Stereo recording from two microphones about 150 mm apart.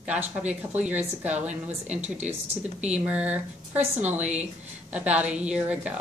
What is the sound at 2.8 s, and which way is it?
A woman's voice, 10° right (ahead or behind).